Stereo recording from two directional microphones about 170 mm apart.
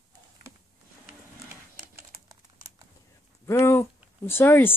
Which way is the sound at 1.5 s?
20° right (ahead or behind).